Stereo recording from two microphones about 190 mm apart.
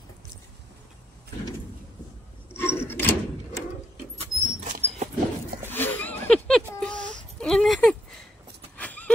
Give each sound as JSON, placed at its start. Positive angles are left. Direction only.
{"t": 2.5, "sound": "wood", "side_deg": 10}
{"t": 4.2, "sound": "rodents", "side_deg": -40}
{"t": 5.7, "sound": "a sound", "side_deg": 10}
{"t": 6.8, "sound": "whimper", "side_deg": 5}
{"t": 8.7, "sound": "horse", "side_deg": 10}